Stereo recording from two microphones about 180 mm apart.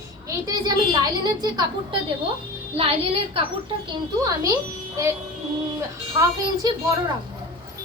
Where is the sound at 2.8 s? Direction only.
30° right (ahead or behind).